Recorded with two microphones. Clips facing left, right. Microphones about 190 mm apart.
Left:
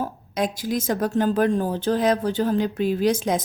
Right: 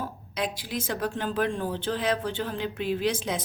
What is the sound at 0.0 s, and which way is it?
A woman's voice, 45° left (ahead or behind).